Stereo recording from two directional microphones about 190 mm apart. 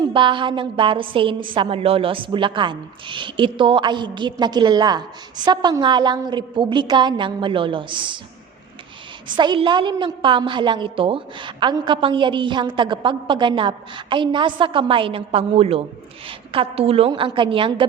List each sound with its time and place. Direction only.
0.0 s a woman's voice: 25° right (ahead or behind)
9.3 s a woman's voice: 25° right (ahead or behind)